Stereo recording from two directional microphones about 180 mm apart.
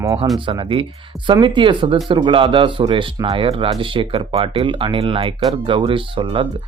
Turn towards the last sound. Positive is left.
turn(degrees=-30)  # may be behind; listen again after turning